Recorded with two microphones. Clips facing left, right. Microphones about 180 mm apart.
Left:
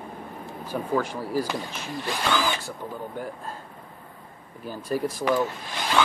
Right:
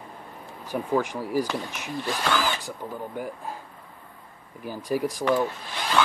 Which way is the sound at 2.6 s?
15° right (ahead or behind).